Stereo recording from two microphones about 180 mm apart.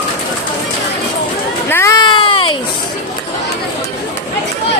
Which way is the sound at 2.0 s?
25° left (ahead or behind).